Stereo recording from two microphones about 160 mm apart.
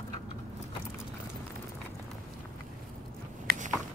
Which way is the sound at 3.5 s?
65° right (ahead or behind).